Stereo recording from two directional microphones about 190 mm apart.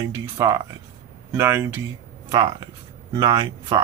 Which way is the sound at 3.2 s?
20° right (ahead or behind).